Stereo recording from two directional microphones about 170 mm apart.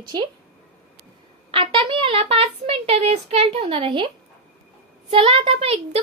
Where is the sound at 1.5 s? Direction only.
30° right (ahead or behind).